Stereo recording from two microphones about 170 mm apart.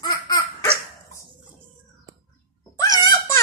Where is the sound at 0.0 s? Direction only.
20° left (ahead or behind).